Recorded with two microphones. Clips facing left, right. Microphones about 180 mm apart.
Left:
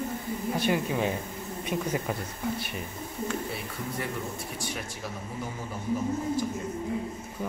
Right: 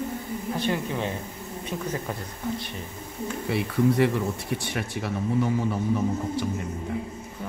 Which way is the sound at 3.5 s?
70° right (ahead or behind).